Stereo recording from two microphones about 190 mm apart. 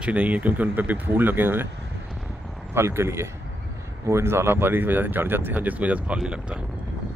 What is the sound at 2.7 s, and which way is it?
Speech, 15° right (ahead or behind).